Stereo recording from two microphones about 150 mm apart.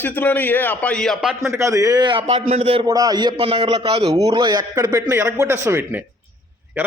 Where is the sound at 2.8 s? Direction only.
25° right (ahead or behind).